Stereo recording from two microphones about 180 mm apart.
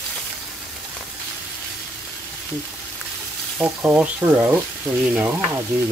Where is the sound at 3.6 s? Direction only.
10° right (ahead or behind).